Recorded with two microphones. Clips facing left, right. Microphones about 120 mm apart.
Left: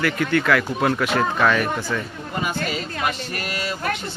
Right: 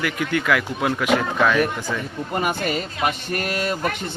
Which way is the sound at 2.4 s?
55° right (ahead or behind).